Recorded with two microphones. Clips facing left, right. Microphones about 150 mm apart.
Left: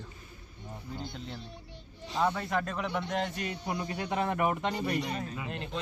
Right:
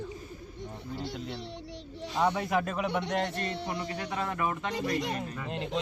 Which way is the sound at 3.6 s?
15° left (ahead or behind).